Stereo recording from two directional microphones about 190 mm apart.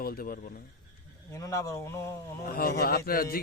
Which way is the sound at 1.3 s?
15° left (ahead or behind).